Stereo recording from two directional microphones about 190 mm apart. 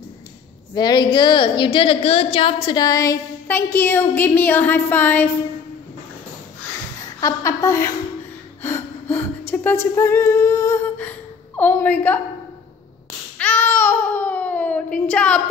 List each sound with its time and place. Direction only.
0.7 s a woman's voice: 20° left (ahead or behind)
7.2 s a woman's voice: 15° left (ahead or behind)
9.5 s speech: 10° left (ahead or behind)
9.9 s humming: 15° left (ahead or behind)
13.4 s babbling: 10° left (ahead or behind)